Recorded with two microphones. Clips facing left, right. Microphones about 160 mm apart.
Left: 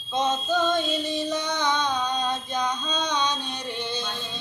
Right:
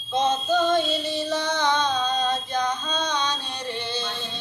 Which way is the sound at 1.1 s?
20° left (ahead or behind).